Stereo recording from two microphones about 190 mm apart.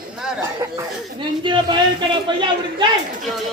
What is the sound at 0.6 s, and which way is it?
Speech, 20° right (ahead or behind).